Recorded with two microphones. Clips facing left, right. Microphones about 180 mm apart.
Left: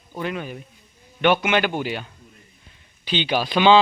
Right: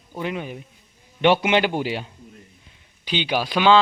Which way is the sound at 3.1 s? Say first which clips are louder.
Left 1 dB; 10° right (ahead or behind).